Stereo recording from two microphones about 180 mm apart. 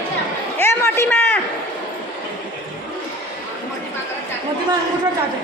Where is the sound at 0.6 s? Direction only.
10° left (ahead or behind).